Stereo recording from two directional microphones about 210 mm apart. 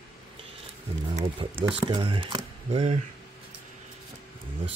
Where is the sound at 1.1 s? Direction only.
25° right (ahead or behind).